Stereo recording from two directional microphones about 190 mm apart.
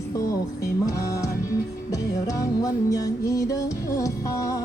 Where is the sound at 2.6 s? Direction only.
15° left (ahead or behind).